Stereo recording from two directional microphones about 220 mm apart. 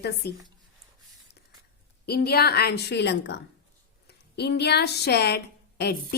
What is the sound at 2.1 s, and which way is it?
A woman's voice, 45° left (ahead or behind).